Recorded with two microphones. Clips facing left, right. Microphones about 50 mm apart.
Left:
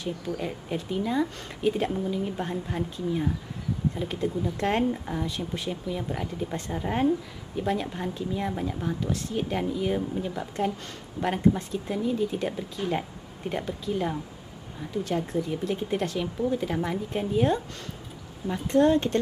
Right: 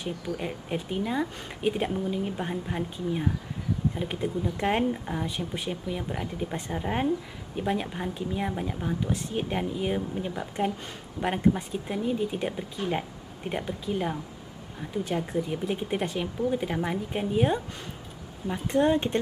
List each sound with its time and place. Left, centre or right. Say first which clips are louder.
0.0 s speech: left 1 dB; centre
11.4 s speech: left 2 dB; centre